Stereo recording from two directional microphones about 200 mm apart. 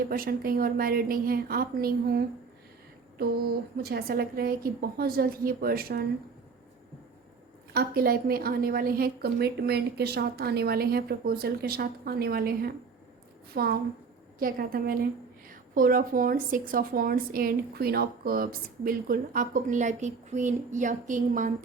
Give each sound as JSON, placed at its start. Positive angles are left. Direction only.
{"t": 0.1, "sound": "a woman's voice", "side_deg": -50}
{"t": 3.8, "sound": "a woman's voice", "side_deg": -50}
{"t": 7.7, "sound": "a woman's voice", "side_deg": -50}